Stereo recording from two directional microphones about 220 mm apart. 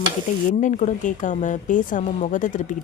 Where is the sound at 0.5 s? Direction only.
35° left (ahead or behind).